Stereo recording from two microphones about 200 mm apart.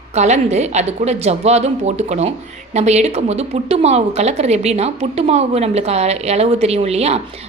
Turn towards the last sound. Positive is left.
turn(degrees=-30)  # may be behind; listen again after turning